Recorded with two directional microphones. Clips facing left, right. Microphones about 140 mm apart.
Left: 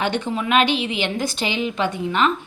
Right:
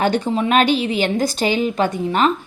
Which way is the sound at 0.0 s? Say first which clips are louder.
Right 5 dB; 35° right (ahead or behind).